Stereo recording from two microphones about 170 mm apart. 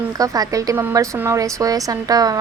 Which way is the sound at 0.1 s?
20° right (ahead or behind).